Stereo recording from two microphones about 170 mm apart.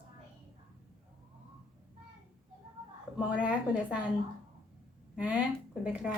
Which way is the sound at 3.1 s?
5° right (ahead or behind).